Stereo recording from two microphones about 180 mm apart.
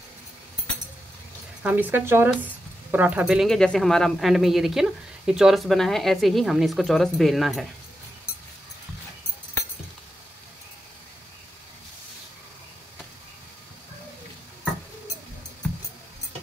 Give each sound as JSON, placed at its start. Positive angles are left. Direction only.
{"t": 1.6, "sound": "speech", "side_deg": -10}